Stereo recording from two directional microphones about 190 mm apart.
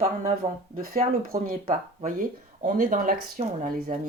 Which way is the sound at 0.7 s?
45° right (ahead or behind).